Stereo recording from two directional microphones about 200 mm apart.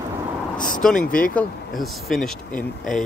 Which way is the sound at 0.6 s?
40° left (ahead or behind).